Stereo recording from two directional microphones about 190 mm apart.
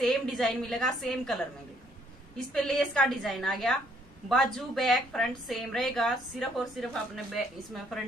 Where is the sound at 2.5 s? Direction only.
5° left (ahead or behind).